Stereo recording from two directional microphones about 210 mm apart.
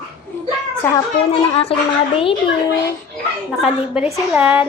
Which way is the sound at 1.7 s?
25° left (ahead or behind).